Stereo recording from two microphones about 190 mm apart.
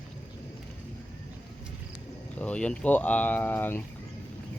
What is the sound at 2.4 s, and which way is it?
A man's voice, 5° left (ahead or behind).